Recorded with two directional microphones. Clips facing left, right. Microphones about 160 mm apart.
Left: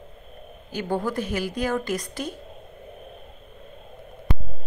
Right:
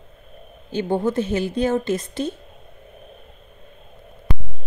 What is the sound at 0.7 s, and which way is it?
Speech, 25° right (ahead or behind).